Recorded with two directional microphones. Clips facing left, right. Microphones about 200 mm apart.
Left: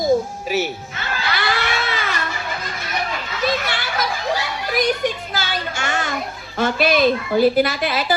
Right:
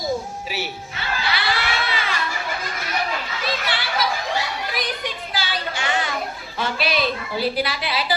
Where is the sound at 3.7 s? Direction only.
45° left (ahead or behind).